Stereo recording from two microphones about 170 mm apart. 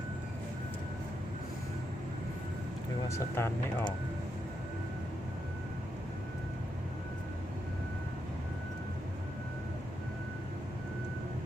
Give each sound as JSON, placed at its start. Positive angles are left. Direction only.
{"t": 3.1, "sound": "speech", "side_deg": 15}